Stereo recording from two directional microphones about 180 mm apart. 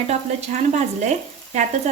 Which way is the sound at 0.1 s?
40° right (ahead or behind).